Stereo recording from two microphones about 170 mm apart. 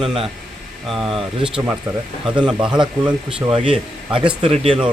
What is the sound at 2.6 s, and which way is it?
Speech, 5° right (ahead or behind).